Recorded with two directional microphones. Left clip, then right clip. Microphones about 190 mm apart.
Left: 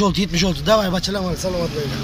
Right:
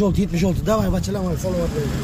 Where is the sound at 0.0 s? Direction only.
5° right (ahead or behind).